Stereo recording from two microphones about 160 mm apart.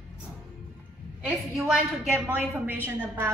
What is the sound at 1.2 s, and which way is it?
A woman's voice, centre (ahead or behind).